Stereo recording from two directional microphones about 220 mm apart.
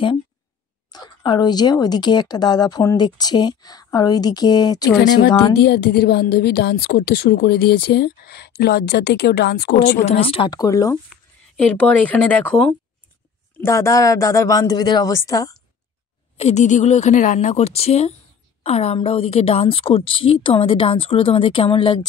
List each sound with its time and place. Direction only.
0.9 s speech: 20° left (ahead or behind)
4.9 s a woman's voice: 45° left (ahead or behind)
10.0 s speech: 25° left (ahead or behind)
11.1 s speech: 5° left (ahead or behind)
16.3 s a woman's voice: 30° left (ahead or behind)